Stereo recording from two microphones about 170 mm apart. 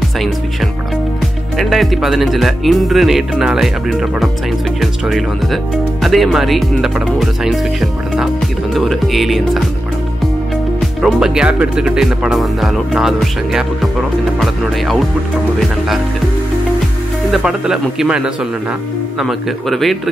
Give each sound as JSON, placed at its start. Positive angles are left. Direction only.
{"t": 1.6, "sound": "speech", "side_deg": 0}
{"t": 11.0, "sound": "speech", "side_deg": -5}
{"t": 17.3, "sound": "speech", "side_deg": -5}